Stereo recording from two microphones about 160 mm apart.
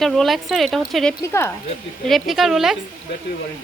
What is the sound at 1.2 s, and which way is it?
Speech, 15° left (ahead or behind).